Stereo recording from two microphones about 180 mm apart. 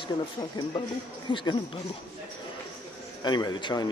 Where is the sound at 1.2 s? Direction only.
25° left (ahead or behind).